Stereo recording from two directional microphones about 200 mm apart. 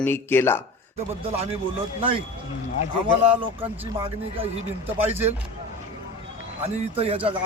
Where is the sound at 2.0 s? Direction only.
25° right (ahead or behind).